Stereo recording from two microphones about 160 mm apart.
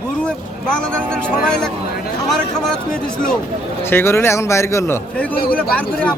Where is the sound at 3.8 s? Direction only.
15° left (ahead or behind).